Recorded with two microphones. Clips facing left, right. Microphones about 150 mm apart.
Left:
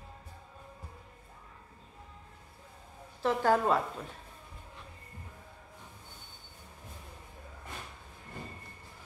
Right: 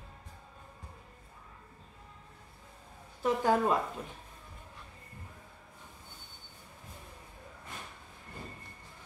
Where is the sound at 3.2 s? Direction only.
15° right (ahead or behind).